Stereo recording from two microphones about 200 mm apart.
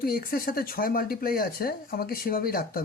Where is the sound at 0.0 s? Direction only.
50° left (ahead or behind).